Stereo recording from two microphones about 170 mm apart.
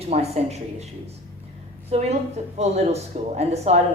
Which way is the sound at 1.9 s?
40° right (ahead or behind).